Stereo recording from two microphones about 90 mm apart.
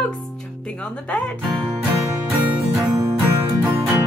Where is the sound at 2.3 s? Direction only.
20° right (ahead or behind).